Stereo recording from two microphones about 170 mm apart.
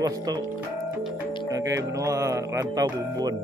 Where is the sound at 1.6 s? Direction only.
20° right (ahead or behind).